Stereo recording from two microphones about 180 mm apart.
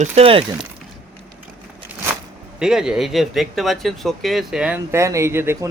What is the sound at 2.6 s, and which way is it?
Speech, 5° right (ahead or behind).